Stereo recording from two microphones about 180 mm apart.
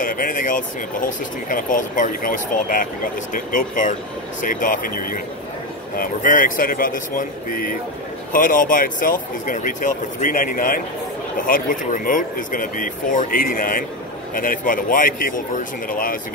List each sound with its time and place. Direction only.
0.0 s speech: 50° left (ahead or behind)